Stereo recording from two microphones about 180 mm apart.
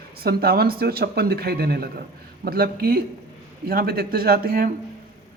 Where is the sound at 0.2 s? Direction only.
60° right (ahead or behind).